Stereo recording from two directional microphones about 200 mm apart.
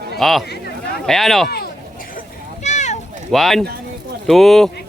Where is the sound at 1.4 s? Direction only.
50° left (ahead or behind).